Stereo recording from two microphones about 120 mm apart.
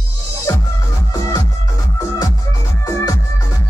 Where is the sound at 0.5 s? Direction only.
35° left (ahead or behind).